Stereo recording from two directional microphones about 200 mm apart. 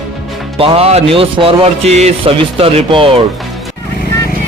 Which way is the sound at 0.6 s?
30° right (ahead or behind).